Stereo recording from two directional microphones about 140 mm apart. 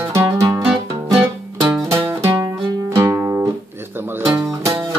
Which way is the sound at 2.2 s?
25° right (ahead or behind).